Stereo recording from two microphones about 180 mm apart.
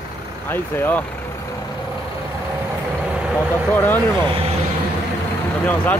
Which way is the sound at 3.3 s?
10° left (ahead or behind).